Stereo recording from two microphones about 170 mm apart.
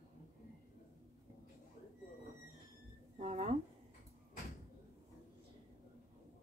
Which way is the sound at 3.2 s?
40° right (ahead or behind).